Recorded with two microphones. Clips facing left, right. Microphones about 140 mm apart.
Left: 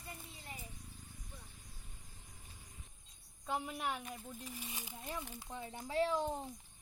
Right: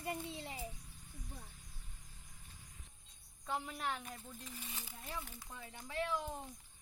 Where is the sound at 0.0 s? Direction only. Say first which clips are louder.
Right 10 dB; 85° right.